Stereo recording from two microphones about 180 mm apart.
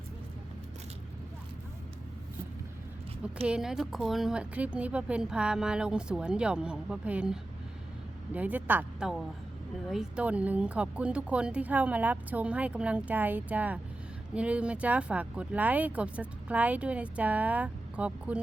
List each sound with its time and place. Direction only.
3.4 s speech: 5° right (ahead or behind)